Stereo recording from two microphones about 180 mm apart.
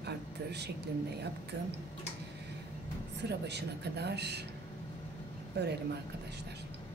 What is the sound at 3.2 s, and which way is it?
Speech, 70° right (ahead or behind).